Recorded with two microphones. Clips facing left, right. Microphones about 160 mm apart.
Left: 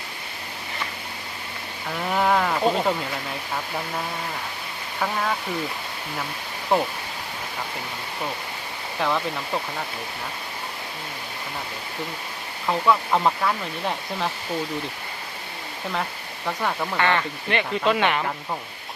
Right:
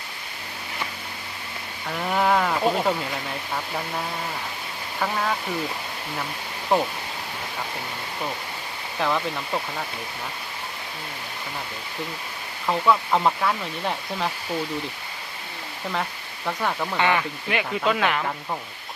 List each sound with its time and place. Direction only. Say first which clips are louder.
1.9 s speech: even; centre (ahead or behind)
6.7 s speech: even; centre (ahead or behind)
9.0 s speech: even; centre (ahead or behind)
12.6 s speech: even; centre (ahead or behind)
16.5 s speech: even; centre (ahead or behind)